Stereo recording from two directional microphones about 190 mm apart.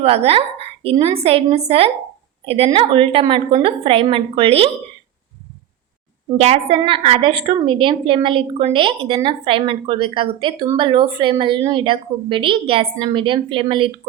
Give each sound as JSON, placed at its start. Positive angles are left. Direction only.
{"t": 0.0, "sound": "a woman's voice", "side_deg": -30}
{"t": 6.3, "sound": "a woman's voice", "side_deg": -35}